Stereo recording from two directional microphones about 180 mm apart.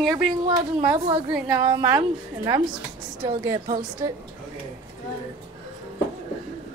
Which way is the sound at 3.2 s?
15° right (ahead or behind).